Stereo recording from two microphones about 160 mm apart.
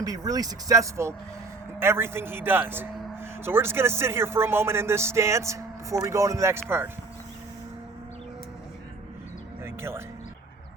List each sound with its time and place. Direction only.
0.0 s speech: 25° right (ahead or behind)
9.6 s music: 15° right (ahead or behind)